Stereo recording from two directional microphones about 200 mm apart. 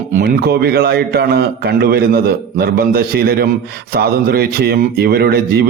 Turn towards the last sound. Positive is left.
turn(degrees=-50)  # may be behind; listen again after turning